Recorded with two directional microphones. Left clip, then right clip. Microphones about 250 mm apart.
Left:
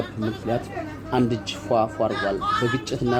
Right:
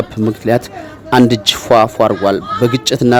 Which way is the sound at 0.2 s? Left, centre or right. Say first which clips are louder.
Right 14 dB; right.